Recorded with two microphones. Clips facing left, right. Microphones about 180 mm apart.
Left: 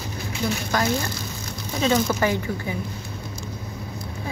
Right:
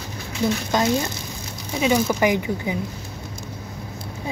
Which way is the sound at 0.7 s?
20° right (ahead or behind).